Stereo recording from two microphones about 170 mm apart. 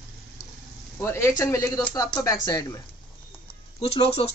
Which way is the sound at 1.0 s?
15° left (ahead or behind).